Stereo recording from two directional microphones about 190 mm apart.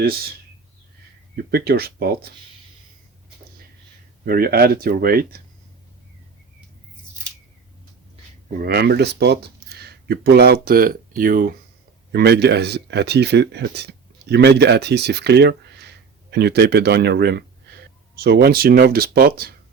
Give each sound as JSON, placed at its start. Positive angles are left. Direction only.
{"t": 1.4, "sound": "speech", "side_deg": -55}
{"t": 4.3, "sound": "speech", "side_deg": -50}
{"t": 8.5, "sound": "speech", "side_deg": -55}
{"t": 12.1, "sound": "speech", "side_deg": -55}